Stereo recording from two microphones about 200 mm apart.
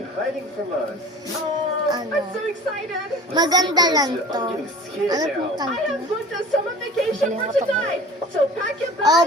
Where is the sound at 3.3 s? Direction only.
20° right (ahead or behind).